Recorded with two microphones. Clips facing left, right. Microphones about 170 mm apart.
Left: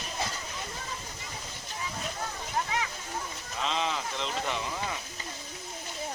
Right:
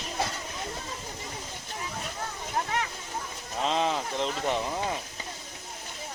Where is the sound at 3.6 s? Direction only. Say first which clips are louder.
Right 4 dB; 45° right (ahead or behind).